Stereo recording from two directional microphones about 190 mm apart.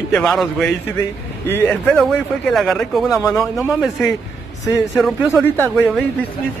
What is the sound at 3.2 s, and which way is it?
Speech, 15° left (ahead or behind).